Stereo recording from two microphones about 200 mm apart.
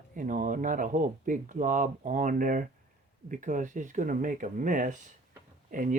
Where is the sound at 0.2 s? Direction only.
40° right (ahead or behind).